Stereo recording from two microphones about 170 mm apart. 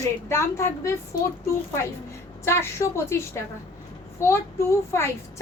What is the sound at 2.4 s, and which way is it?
A woman's voice, 15° left (ahead or behind).